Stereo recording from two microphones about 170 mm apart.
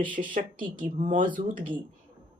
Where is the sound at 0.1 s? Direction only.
50° right (ahead or behind).